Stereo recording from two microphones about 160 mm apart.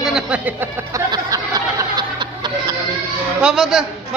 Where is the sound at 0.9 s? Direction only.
20° right (ahead or behind).